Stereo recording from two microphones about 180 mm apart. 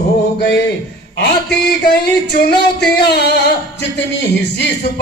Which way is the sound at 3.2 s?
65° left (ahead or behind).